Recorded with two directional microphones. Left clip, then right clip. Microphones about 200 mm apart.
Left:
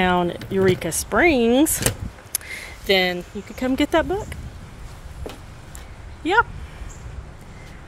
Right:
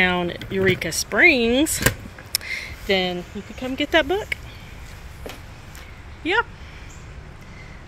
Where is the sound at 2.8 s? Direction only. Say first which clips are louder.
Left 3 dB; 40° left (ahead or behind).